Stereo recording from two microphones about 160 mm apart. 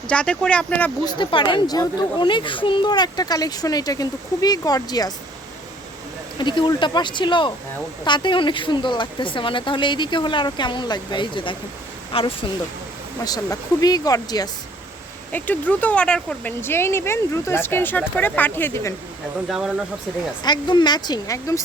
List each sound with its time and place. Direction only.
0.1 s speech: 5° left (ahead or behind)
1.0 s speech: 30° left (ahead or behind)
6.4 s speech: 30° left (ahead or behind)
13.2 s speech: 25° left (ahead or behind)
15.3 s speech: 10° left (ahead or behind)
19.5 s speech: 5° right (ahead or behind)
20.4 s speech: 25° left (ahead or behind)